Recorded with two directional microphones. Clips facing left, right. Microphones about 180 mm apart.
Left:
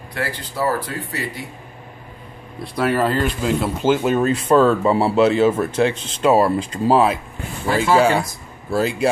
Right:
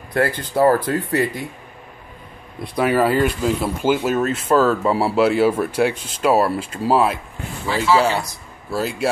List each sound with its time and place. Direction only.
0.1 s speech: 50° right (ahead or behind)
2.6 s speech: 15° right (ahead or behind)
7.6 s speech: 50° left (ahead or behind)
8.7 s speech: centre (ahead or behind)